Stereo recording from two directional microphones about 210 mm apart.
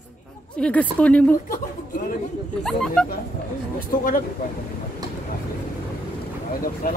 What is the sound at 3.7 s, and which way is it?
Speech, 40° left (ahead or behind).